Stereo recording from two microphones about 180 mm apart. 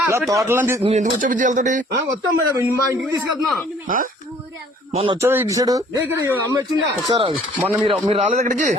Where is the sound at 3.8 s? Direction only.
50° right (ahead or behind).